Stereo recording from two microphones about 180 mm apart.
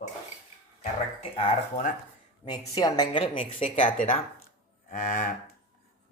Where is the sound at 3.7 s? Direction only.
45° left (ahead or behind).